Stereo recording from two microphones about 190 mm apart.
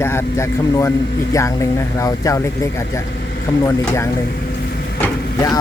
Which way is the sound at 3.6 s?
15° left (ahead or behind).